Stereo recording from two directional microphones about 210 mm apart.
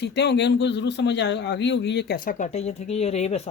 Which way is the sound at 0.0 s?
55° left (ahead or behind).